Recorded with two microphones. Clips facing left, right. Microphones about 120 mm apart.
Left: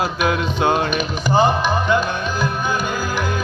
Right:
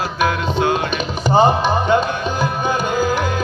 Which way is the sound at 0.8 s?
25° right (ahead or behind).